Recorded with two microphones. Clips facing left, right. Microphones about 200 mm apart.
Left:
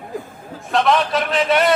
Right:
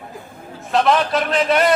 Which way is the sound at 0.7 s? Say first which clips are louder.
Right 1 dB; centre (ahead or behind).